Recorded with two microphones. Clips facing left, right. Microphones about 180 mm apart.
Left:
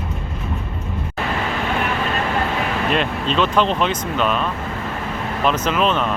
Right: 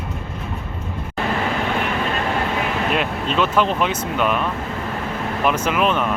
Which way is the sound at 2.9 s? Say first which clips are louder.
Left 1 dB; 10° right (ahead or behind).